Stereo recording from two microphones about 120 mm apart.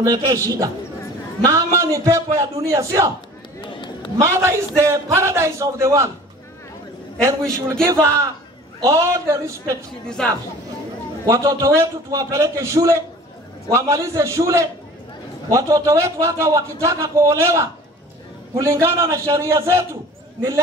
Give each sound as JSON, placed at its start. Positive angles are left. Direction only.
{"t": 0.0, "sound": "a man's voice", "side_deg": -25}
{"t": 3.6, "sound": "a sound", "side_deg": 40}
{"t": 4.2, "sound": "a man's voice", "side_deg": -20}
{"t": 7.8, "sound": "a man's voice", "side_deg": -20}
{"t": 10.0, "sound": "speech", "side_deg": 5}
{"t": 11.2, "sound": "a man's voice", "side_deg": -25}